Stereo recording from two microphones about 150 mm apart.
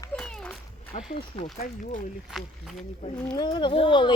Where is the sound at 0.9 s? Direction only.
50° left (ahead or behind).